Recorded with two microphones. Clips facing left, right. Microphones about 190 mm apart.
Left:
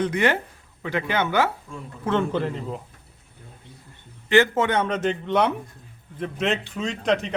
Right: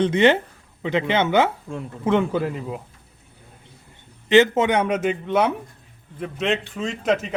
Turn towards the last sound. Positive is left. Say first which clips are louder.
# right 1 dB
turn(degrees=-5)  # may be behind; listen again after turning